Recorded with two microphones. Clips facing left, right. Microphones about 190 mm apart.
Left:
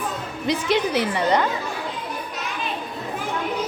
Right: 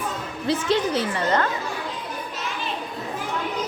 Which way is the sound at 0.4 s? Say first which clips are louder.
Even; 15° left (ahead or behind).